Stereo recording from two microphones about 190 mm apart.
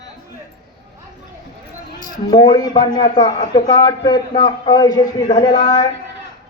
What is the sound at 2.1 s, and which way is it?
A man's voice, 20° left (ahead or behind).